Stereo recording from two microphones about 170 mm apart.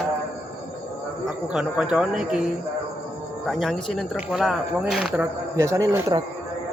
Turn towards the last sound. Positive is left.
turn(degrees=-20)  # may be behind; listen again after turning